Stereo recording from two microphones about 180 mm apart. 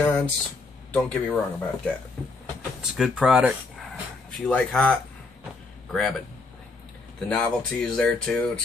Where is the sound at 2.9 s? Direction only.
Centre (ahead or behind).